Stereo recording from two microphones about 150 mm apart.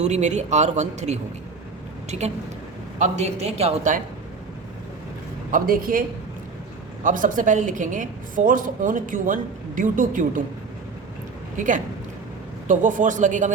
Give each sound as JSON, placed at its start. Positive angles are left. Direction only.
{"t": 0.0, "sound": "speech", "side_deg": -50}
{"t": 5.5, "sound": "a woman's voice", "side_deg": -65}
{"t": 11.5, "sound": "a woman's voice", "side_deg": -60}